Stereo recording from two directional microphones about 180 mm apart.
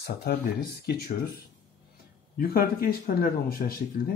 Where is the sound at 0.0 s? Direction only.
60° left (ahead or behind).